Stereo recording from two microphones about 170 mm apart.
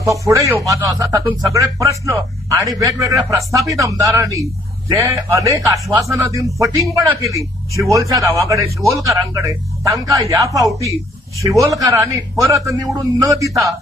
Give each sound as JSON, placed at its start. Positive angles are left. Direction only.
{"t": 0.2, "sound": "a man's voice", "side_deg": -20}